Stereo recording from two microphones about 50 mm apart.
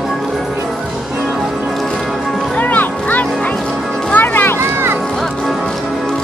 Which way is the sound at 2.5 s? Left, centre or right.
Left.